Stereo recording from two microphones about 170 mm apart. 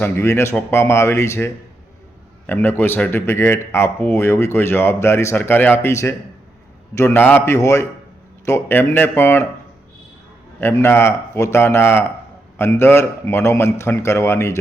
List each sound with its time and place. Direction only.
0.0 s speech: 15° left (ahead or behind)
2.5 s speech: 15° left (ahead or behind)
10.6 s speech: 15° left (ahead or behind)